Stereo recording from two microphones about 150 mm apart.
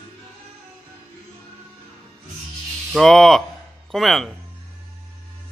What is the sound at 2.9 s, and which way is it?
Speech, centre (ahead or behind).